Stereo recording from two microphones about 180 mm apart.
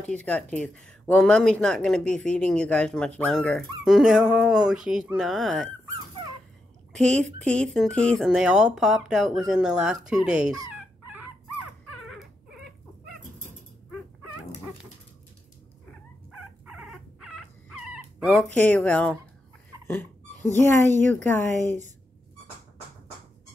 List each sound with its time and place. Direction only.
0.0 s speech: 5° left (ahead or behind)
6.9 s speech: 5° left (ahead or behind)
10.7 s dog: 10° right (ahead or behind)
16.3 s dog: 5° right (ahead or behind)
18.7 s speech: 5° left (ahead or behind)
20.8 s speech: 15° left (ahead or behind)